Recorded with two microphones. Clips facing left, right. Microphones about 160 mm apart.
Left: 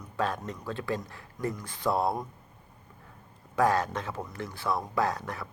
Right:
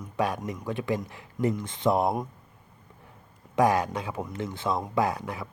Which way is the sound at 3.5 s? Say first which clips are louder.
Right 2 dB; 15° right (ahead or behind).